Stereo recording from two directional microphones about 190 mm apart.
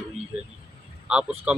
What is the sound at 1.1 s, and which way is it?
Speech, 5° right (ahead or behind).